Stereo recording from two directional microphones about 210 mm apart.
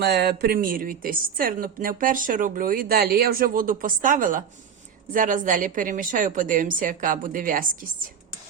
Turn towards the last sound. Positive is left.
turn(degrees=-40)  # may be behind; listen again after turning